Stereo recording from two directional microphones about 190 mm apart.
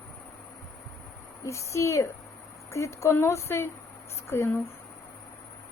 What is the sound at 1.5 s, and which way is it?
A woman's voice, 15° left (ahead or behind).